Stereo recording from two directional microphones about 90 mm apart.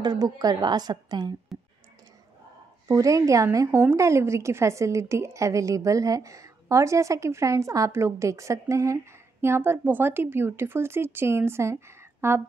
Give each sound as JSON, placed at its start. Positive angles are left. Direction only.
{"t": 0.0, "sound": "a woman's voice", "side_deg": -50}
{"t": 1.5, "sound": "clicking", "side_deg": 0}
{"t": 2.9, "sound": "a woman's voice", "side_deg": -35}